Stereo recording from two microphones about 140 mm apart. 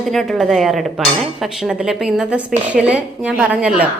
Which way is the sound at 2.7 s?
10° right (ahead or behind).